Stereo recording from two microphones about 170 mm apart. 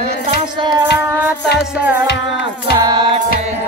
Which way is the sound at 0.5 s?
25° right (ahead or behind).